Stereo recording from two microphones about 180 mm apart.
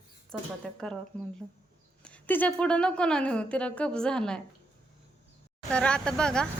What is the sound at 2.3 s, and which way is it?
Speech, 5° left (ahead or behind).